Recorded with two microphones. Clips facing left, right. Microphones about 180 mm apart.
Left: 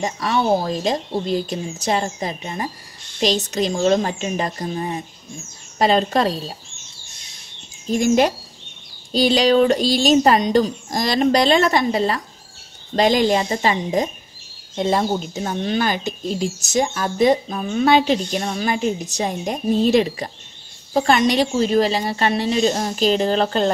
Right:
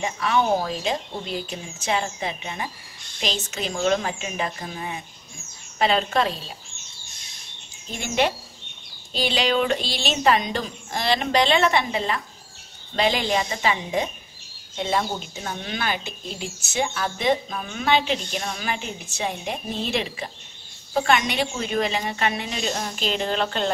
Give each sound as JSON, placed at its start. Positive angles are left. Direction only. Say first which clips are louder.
{"t": 0.0, "sound": "speech", "louder": "left 2 dB", "side_deg": 35}
{"t": 7.9, "sound": "speech", "louder": "left 8 dB", "side_deg": 40}